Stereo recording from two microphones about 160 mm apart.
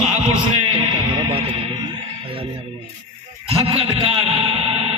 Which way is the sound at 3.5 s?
40° right (ahead or behind).